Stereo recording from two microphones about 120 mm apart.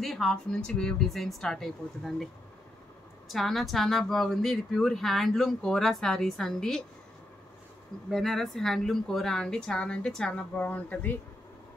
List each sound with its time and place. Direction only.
0.0 s a woman's voice: centre (ahead or behind)
3.3 s a woman's voice: centre (ahead or behind)
8.1 s a woman's voice: centre (ahead or behind)